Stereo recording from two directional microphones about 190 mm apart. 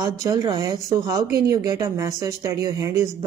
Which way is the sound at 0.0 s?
15° right (ahead or behind).